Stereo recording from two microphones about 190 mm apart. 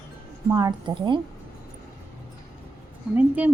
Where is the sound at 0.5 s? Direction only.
20° right (ahead or behind).